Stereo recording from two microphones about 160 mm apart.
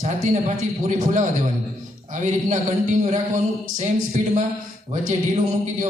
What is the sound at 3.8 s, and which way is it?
A man's voice, 50° right (ahead or behind).